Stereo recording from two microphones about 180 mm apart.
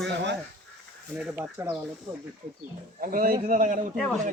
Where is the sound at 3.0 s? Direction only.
50° right (ahead or behind).